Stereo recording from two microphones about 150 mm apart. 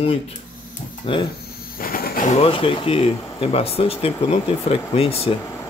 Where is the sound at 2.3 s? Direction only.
40° left (ahead or behind).